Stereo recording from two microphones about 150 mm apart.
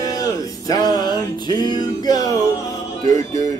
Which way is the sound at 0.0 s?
25° left (ahead or behind).